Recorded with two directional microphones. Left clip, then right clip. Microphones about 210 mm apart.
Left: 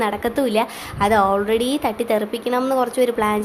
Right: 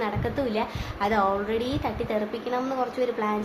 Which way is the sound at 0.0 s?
45° left (ahead or behind).